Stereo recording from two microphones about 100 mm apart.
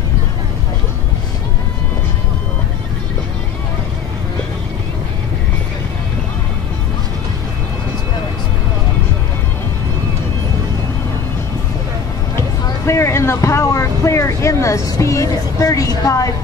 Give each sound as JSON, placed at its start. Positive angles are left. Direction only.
{"t": 12.8, "sound": "vehicle", "side_deg": 30}